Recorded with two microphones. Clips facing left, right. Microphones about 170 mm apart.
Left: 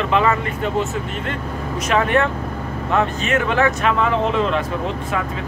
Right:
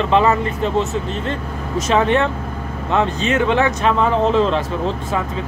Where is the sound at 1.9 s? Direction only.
25° right (ahead or behind).